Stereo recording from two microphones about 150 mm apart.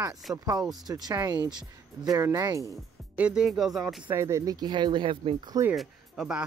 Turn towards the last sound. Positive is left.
turn(degrees=-5)  # may be behind; listen again after turning